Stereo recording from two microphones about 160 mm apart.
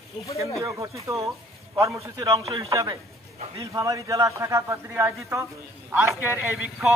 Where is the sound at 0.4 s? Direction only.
20° right (ahead or behind).